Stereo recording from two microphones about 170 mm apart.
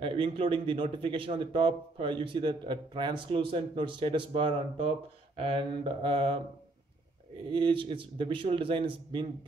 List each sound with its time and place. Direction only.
0.0 s a man's voice: 30° right (ahead or behind)
7.4 s a man's voice: 30° right (ahead or behind)